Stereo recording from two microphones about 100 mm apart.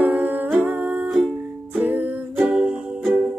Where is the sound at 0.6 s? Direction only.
15° right (ahead or behind).